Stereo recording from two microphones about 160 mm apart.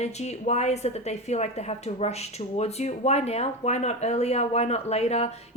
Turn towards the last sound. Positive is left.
turn(degrees=40)  # may be behind; listen again after turning